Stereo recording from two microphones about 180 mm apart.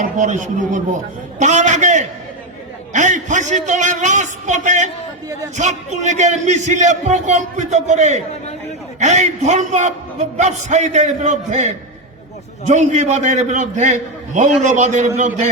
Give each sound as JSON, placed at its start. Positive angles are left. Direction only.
{"t": 0.0, "sound": "a man's voice", "side_deg": -45}